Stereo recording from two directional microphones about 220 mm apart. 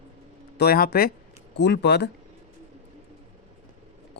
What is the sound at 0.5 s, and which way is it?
Speech, 45° left (ahead or behind).